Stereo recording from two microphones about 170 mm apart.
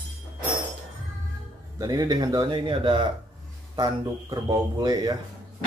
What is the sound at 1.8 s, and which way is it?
Speech, 20° right (ahead or behind).